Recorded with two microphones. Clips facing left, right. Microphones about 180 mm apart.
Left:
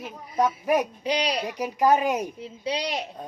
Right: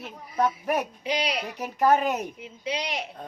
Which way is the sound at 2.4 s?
35° left (ahead or behind).